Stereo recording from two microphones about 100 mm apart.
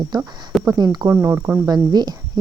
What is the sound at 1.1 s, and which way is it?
Speech, 25° right (ahead or behind).